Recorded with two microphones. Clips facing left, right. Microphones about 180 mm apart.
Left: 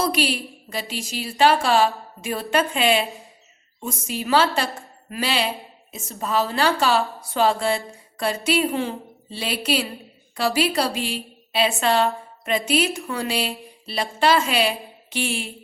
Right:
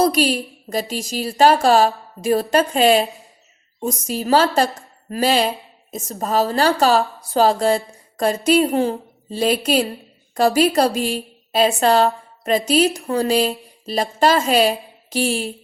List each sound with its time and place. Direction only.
0.0 s a woman's voice: 40° right (ahead or behind)